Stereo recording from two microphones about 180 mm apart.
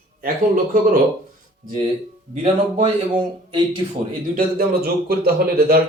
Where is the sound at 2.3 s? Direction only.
35° right (ahead or behind).